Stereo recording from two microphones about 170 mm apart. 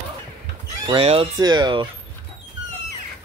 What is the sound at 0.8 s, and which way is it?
Speech, 35° right (ahead or behind).